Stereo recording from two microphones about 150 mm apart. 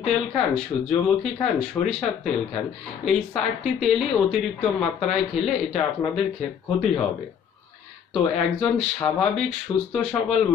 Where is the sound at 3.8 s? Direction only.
Centre (ahead or behind).